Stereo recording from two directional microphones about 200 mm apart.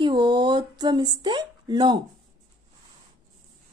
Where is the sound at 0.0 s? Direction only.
20° right (ahead or behind).